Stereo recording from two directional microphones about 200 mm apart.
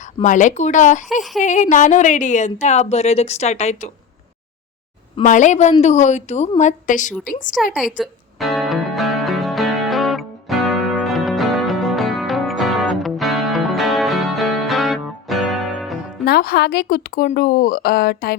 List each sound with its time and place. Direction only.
0.2 s a woman's voice: 40° left (ahead or behind)
5.1 s a woman's voice: 40° left (ahead or behind)
7.5 s music: centre (ahead or behind)
16.2 s a woman's voice: 50° left (ahead or behind)